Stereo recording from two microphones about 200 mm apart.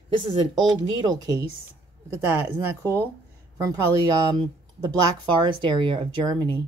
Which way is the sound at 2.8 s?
10° left (ahead or behind).